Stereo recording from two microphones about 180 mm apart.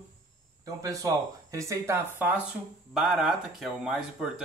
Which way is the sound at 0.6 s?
20° right (ahead or behind).